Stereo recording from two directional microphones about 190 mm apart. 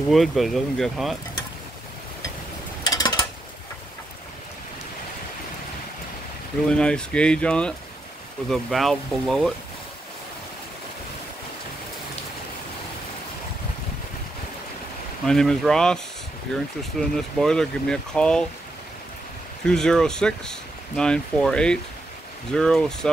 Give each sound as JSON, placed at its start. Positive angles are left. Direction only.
{"t": 0.1, "sound": "speech", "side_deg": 0}
{"t": 2.8, "sound": "mechanisms", "side_deg": 20}
{"t": 6.7, "sound": "speech", "side_deg": 5}
{"t": 15.2, "sound": "speech", "side_deg": 5}
{"t": 19.6, "sound": "speech", "side_deg": 5}